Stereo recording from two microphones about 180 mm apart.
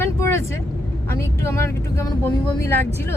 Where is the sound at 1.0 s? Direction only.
15° left (ahead or behind).